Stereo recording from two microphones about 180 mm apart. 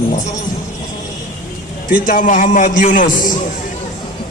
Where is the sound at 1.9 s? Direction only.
50° left (ahead or behind).